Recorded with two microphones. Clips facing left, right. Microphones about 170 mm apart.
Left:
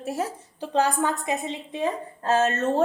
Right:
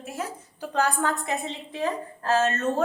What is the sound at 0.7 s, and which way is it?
A woman's voice, 20° left (ahead or behind).